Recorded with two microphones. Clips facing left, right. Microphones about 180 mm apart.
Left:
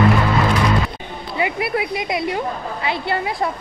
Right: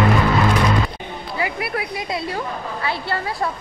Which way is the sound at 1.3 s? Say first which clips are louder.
Left 4 dB; 20° left (ahead or behind).